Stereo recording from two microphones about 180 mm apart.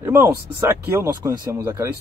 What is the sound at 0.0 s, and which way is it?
Speech, 15° right (ahead or behind).